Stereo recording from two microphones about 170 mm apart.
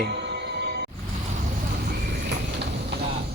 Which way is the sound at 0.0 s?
75° right (ahead or behind).